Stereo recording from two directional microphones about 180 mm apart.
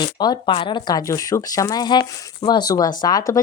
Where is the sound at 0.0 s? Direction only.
25° left (ahead or behind).